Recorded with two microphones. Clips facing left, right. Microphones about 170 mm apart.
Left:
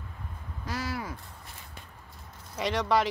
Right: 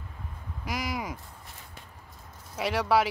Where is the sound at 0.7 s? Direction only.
15° right (ahead or behind).